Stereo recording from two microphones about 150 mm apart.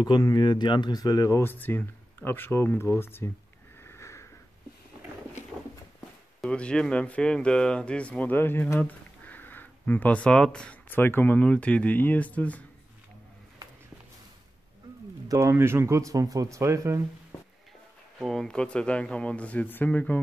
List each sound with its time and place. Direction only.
0.0 s speech: 30° left (ahead or behind)
3.8 s sniff: 20° left (ahead or behind)
6.4 s speech: 5° left (ahead or behind)
15.2 s speech: 20° right (ahead or behind)
18.2 s speech: centre (ahead or behind)